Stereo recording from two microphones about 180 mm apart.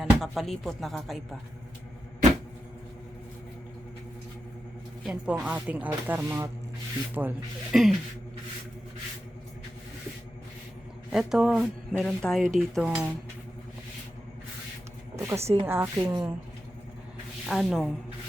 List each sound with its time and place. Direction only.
0.0 s speech: centre (ahead or behind)
5.0 s speech: 5° right (ahead or behind)
11.1 s speech: centre (ahead or behind)
15.1 s a sound: 15° right (ahead or behind)
15.4 s speech: 35° right (ahead or behind)
15.6 s speech: 15° right (ahead or behind)
17.5 s speech: centre (ahead or behind)